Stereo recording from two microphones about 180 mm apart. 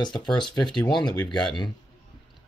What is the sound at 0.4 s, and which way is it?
Speech, 25° left (ahead or behind).